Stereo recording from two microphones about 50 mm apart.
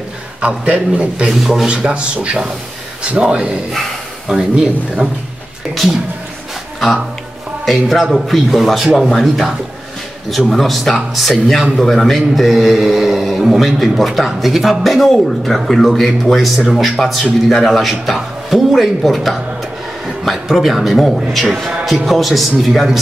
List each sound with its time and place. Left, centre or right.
0.4 s a man's voice: right
1.2 s a man's voice: centre
1.7 s a man's voice: centre
3.7 s a sound: centre
5.0 s speech: centre
7.6 s a man's voice: centre
10.3 s a man's voice: centre